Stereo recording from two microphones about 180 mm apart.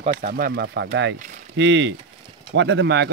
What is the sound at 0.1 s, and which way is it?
Speech, 55° right (ahead or behind).